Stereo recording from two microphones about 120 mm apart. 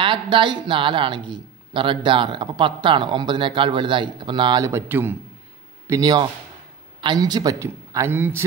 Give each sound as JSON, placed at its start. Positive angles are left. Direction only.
{"t": 0.0, "sound": "speech", "side_deg": -45}
{"t": 4.6, "sound": "a man's voice", "side_deg": -20}
{"t": 5.9, "sound": "speech", "side_deg": -35}